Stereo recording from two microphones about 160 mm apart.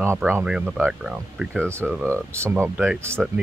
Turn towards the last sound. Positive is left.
turn(degrees=-15)  # may be behind; listen again after turning